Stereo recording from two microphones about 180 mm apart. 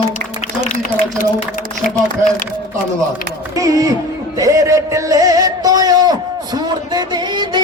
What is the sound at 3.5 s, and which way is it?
Music, 20° right (ahead or behind).